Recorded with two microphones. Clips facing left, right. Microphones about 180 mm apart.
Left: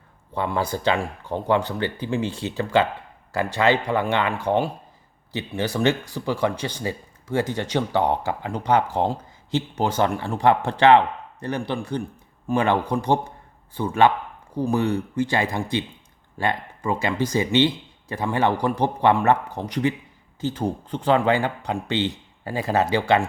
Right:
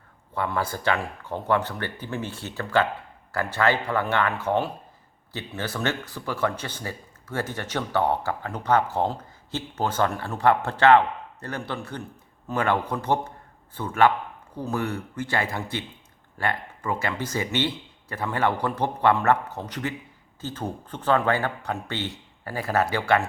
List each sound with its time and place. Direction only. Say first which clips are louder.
0.3 s speech: left 3 dB; 20° left (ahead or behind)